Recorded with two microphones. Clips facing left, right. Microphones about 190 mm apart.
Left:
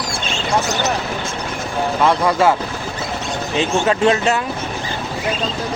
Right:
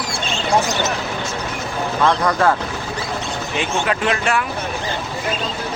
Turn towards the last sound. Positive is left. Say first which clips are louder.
# left 4 dB
turn(degrees=25)  # may be behind; listen again after turning